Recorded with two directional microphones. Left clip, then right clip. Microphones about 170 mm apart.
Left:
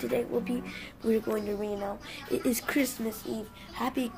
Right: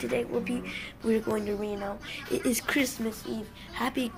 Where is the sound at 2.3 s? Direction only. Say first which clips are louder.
Right 1 dB; 5° left (ahead or behind).